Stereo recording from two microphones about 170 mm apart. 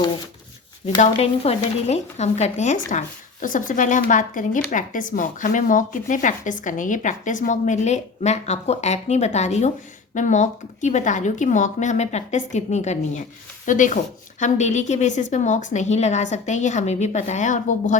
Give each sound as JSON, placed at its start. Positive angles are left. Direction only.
{"t": 0.9, "sound": "speech", "side_deg": 35}